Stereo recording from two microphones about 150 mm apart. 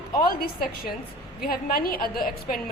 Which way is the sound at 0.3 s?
85° left.